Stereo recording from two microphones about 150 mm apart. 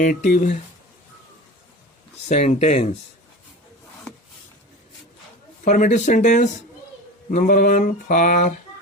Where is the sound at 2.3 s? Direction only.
45° left (ahead or behind).